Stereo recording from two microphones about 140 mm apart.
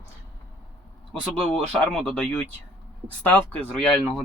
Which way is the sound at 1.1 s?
5° left (ahead or behind).